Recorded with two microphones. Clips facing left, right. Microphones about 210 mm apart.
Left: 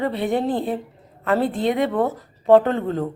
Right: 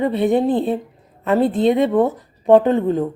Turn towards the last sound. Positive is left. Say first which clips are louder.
# right 5 dB
turn(degrees=-15)  # may be behind; listen again after turning